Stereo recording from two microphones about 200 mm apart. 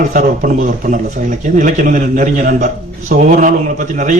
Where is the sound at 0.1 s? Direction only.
40° right (ahead or behind).